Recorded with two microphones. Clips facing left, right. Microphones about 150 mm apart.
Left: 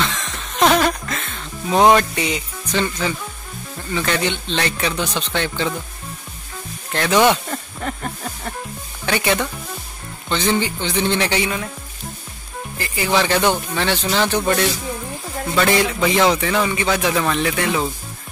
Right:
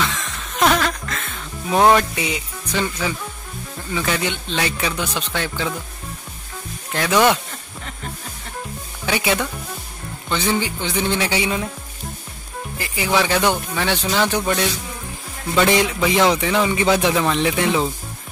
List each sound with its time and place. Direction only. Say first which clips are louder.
0.0 s music: even; centre (ahead or behind)
0.7 s a sound: left 4 dB; 15° left (ahead or behind)
2.0 s music: left 1 dB; 5° right (ahead or behind)
3.9 s speech: left 2 dB; 5° right (ahead or behind)
6.9 s speech: left 1 dB; 5° right (ahead or behind)
7.8 s music: left 12 dB; 55° left (ahead or behind)
9.0 s speech: left 1 dB; 10° right (ahead or behind)
12.7 s speech: left 1 dB; 10° right (ahead or behind)
15.5 s speech: right 1 dB; 15° right (ahead or behind)
16.8 s music: right 2 dB; 5° right (ahead or behind)
17.2 s speech: right 1 dB; 20° right (ahead or behind)